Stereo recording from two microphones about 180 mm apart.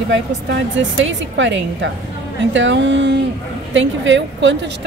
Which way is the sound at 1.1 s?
90° right.